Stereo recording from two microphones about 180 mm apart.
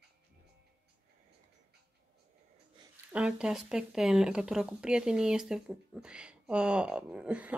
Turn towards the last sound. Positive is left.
turn(degrees=-5)  # may be behind; listen again after turning